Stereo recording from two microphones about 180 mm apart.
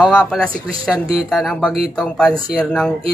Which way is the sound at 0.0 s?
5° right (ahead or behind).